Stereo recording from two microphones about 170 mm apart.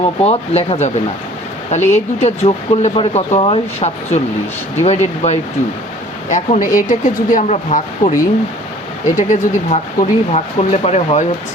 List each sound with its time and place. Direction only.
0.2 s speech: 35° left (ahead or behind)